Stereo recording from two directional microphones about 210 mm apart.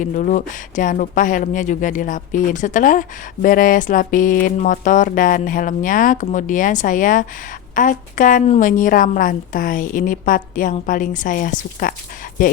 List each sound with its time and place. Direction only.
0.0 s speech: 35° left (ahead or behind)